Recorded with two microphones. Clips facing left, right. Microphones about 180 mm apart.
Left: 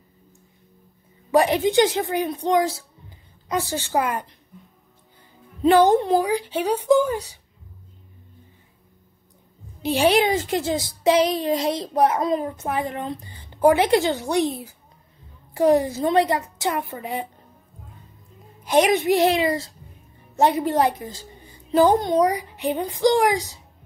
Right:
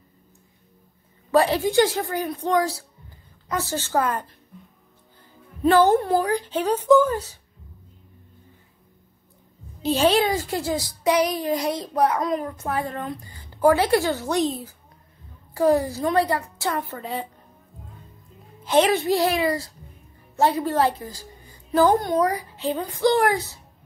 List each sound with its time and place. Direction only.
1.3 s a child's voice: 15° left (ahead or behind)
5.6 s a woman's voice: 15° left (ahead or behind)
9.8 s a child's voice: 15° left (ahead or behind)
18.6 s a child's voice: 15° left (ahead or behind)